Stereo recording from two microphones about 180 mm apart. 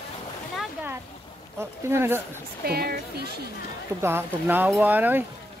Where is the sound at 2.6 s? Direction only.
60° right (ahead or behind).